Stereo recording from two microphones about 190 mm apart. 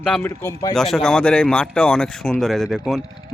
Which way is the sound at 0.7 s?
Centre (ahead or behind).